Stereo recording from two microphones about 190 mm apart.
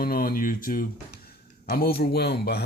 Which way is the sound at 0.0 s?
50° left (ahead or behind).